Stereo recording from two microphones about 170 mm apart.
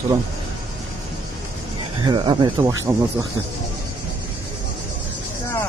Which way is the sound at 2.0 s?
25° right (ahead or behind).